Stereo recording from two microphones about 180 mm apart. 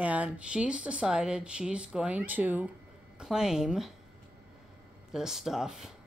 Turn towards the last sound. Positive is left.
turn(degrees=0)  # may be behind; listen again after turning